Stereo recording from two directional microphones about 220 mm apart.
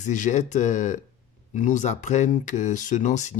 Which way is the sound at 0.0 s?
35° left (ahead or behind).